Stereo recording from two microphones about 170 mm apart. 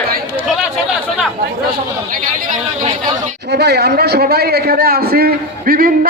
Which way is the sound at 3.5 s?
75° right (ahead or behind).